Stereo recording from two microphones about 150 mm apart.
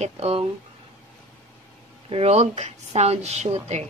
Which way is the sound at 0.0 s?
45° right (ahead or behind).